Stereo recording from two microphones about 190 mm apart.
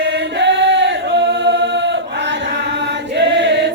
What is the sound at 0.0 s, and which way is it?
Chant, 65° right (ahead or behind).